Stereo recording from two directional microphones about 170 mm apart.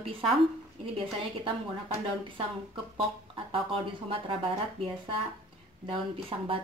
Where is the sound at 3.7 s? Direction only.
35° right (ahead or behind).